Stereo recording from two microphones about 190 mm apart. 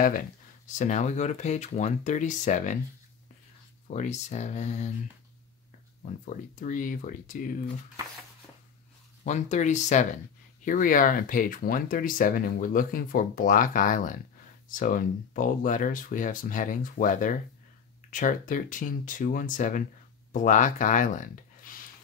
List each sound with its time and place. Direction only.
0.7 s speech: 40° left (ahead or behind)
3.8 s speech: 40° left (ahead or behind)
6.2 s speech: 40° left (ahead or behind)
9.2 s speech: 40° left (ahead or behind)
21.7 s a sound: 45° left (ahead or behind)